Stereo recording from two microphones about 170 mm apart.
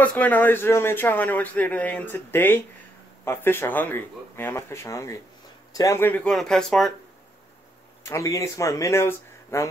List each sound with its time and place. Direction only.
0.0 s a man's voice: 10° left (ahead or behind)
8.0 s speech: 15° left (ahead or behind)